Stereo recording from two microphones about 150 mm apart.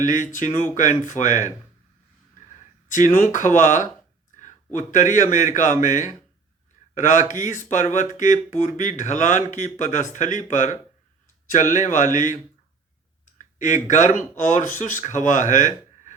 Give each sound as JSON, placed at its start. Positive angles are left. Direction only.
{"t": 0.0, "sound": "speech", "side_deg": 60}
{"t": 2.9, "sound": "a man's voice", "side_deg": 60}